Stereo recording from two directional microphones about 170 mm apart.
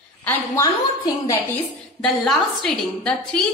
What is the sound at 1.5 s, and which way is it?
A woman's voice, 5° left (ahead or behind).